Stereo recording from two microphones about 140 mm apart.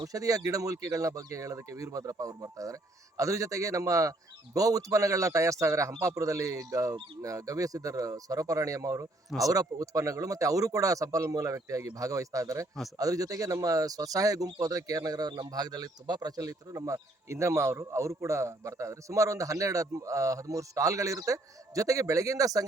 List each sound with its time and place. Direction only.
0.0 s speech: 25° right (ahead or behind)